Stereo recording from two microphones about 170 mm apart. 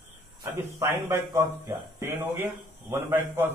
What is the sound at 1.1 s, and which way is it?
Speech, 20° right (ahead or behind).